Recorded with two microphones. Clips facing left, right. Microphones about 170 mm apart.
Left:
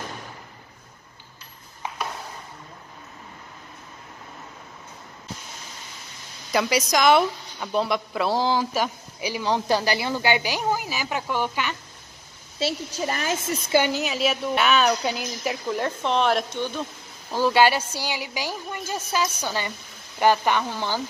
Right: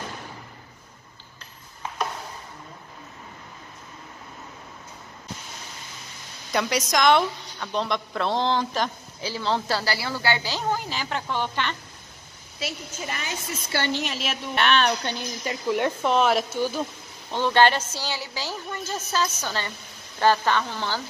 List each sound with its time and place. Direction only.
6.5 s a woman's voice: centre (ahead or behind)
12.5 s a woman's voice: 30° left (ahead or behind)
13.7 s a woman's voice: 15° left (ahead or behind); by 16.8 s 5° right (ahead or behind)
17.3 s a woman's voice: 10° left (ahead or behind)